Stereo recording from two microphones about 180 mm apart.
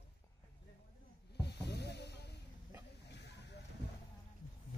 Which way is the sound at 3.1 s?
70° left (ahead or behind).